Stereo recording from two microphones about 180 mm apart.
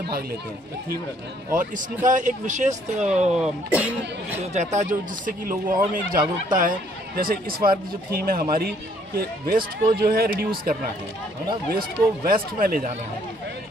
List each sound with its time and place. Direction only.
1.5 s speech: 45° right (ahead or behind)
3.3 s speech: 5° right (ahead or behind)
4.6 s speech: 40° right (ahead or behind)
12.3 s speech: 55° right (ahead or behind)